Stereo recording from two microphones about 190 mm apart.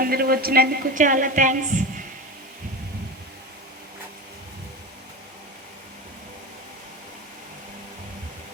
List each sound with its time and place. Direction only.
0.0 s a woman's voice: 50° right (ahead or behind)